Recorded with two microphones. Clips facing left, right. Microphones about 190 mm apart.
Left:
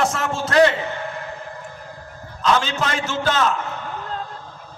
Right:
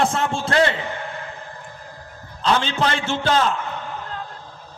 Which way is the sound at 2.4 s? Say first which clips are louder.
Even; 30° right (ahead or behind).